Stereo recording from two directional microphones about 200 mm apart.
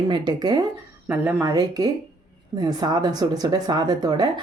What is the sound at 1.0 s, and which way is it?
Speech, 10° right (ahead or behind).